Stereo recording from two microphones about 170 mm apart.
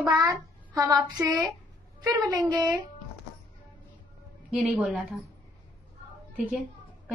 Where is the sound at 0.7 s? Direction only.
20° right (ahead or behind).